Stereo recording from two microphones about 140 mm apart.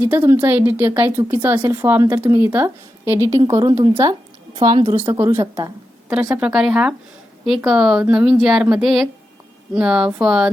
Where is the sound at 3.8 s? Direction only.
35° right (ahead or behind).